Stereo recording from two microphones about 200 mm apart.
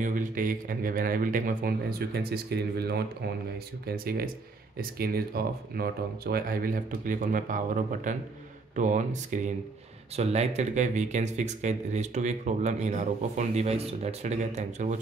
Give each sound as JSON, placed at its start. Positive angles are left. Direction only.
{"t": 0.0, "sound": "speech", "side_deg": -40}